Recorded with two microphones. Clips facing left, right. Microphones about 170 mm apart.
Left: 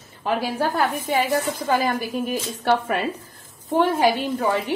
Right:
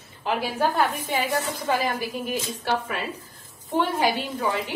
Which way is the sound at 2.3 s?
55° left (ahead or behind).